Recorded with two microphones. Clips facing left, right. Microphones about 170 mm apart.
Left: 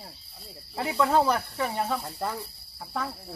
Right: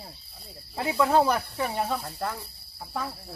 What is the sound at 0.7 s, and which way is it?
Speech, 10° right (ahead or behind).